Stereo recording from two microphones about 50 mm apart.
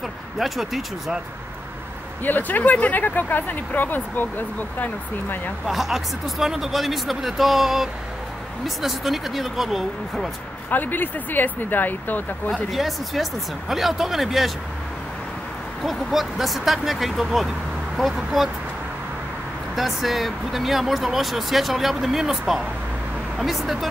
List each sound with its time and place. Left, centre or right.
0.4 s speech: centre
2.2 s speech: left
5.7 s speech: centre
10.7 s speech: left
12.7 s speech: centre
15.8 s speech: centre
19.7 s speech: centre